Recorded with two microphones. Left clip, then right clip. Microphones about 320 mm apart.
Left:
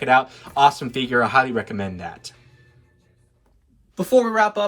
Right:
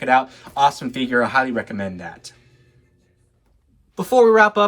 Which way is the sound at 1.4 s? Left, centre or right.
Left.